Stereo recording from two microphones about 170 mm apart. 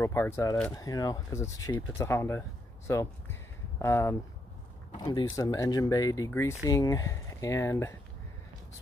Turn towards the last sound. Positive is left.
turn(degrees=15)  # may be behind; listen again after turning